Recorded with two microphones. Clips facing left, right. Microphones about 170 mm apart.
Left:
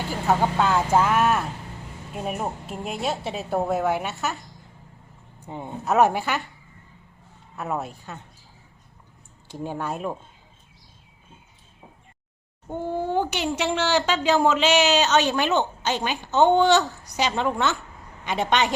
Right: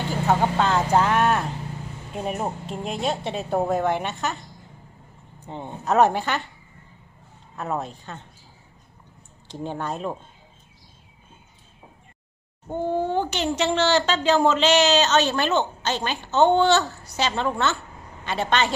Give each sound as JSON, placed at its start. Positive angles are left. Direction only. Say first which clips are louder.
{"t": 0.1, "sound": "speech", "louder": "right 1 dB", "side_deg": 5}
{"t": 5.4, "sound": "speech", "louder": "left 1 dB", "side_deg": 10}
{"t": 7.5, "sound": "speech", "louder": "right 1 dB", "side_deg": 5}
{"t": 9.5, "sound": "speech", "louder": "even", "side_deg": 10}
{"t": 12.7, "sound": "speech", "louder": "right 1 dB", "side_deg": 10}